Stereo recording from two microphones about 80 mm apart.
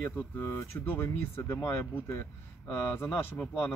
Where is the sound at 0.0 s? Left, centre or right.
Left.